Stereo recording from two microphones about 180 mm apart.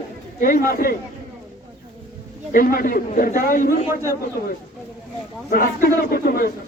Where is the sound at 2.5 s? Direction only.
55° left (ahead or behind).